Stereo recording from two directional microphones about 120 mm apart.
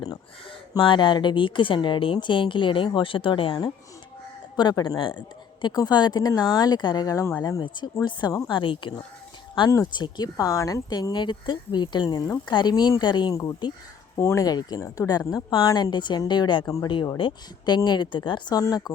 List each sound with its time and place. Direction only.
0.8 s a woman's voice: 40° left (ahead or behind)
9.6 s speech: 30° left (ahead or behind)
14.2 s a woman's voice: 25° left (ahead or behind); by 18.6 s 40° left (ahead or behind)